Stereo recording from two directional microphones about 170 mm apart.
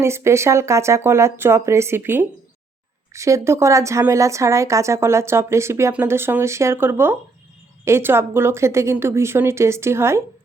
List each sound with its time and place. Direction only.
0.0 s a woman's voice: 15° right (ahead or behind)